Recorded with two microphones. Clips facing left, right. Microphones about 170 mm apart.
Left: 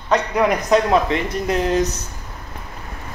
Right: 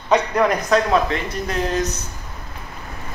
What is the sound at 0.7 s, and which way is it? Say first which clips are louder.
Speech: left 3 dB; 20° left (ahead or behind).